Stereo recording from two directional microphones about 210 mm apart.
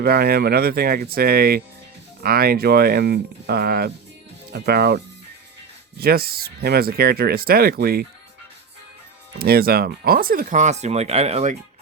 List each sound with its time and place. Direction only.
0.0 s speech: 50° right (ahead or behind)
6.0 s speech: 45° right (ahead or behind)
9.4 s speech: 45° right (ahead or behind); by 11.5 s 30° right (ahead or behind)